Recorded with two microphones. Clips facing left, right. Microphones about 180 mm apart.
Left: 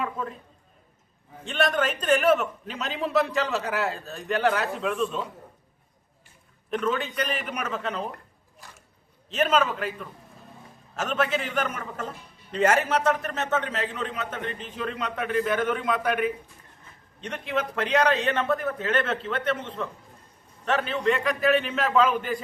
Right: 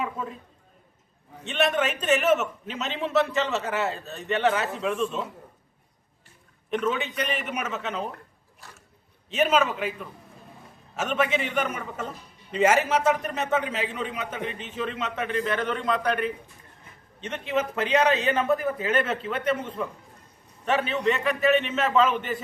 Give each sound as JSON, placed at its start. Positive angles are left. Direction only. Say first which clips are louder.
{"t": 0.0, "sound": "a sound", "louder": "even", "side_deg": -5}
{"t": 1.5, "sound": "a man's voice", "louder": "even", "side_deg": -5}
{"t": 6.7, "sound": "a man's voice", "louder": "even", "side_deg": 0}
{"t": 9.3, "sound": "a man's voice", "louder": "right 1 dB", "side_deg": -5}